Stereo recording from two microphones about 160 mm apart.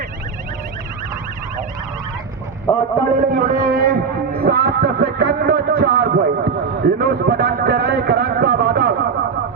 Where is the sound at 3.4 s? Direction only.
60° right (ahead or behind).